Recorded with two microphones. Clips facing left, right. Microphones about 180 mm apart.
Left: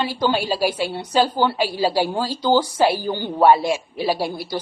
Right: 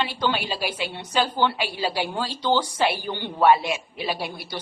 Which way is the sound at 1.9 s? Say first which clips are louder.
Left 7 dB; 40° left (ahead or behind).